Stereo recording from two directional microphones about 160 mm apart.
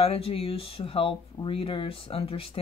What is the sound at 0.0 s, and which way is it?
Speech, 35° left (ahead or behind).